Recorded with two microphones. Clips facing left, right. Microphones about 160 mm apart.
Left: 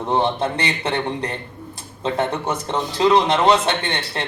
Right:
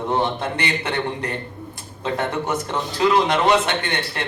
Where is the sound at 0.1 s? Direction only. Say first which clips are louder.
Left 4 dB; 25° left (ahead or behind).